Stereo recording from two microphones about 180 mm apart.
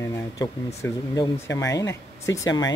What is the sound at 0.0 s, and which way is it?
Speech, 15° left (ahead or behind).